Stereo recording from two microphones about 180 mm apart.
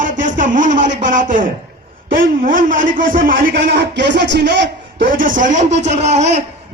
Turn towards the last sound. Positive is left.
turn(degrees=-40)  # may be behind; listen again after turning